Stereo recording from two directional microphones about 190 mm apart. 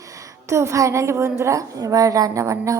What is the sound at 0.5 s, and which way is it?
A woman's voice, 15° right (ahead or behind).